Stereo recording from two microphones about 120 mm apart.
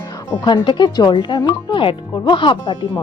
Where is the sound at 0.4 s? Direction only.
40° left (ahead or behind).